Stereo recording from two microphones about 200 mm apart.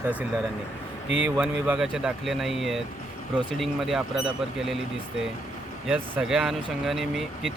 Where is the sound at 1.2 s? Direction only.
5° right (ahead or behind).